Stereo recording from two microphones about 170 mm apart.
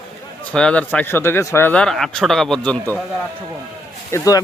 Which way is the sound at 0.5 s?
5° left (ahead or behind).